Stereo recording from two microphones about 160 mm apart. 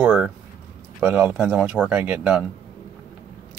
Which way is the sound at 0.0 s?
10° right (ahead or behind).